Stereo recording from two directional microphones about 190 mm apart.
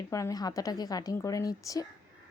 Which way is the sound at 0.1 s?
15° left (ahead or behind).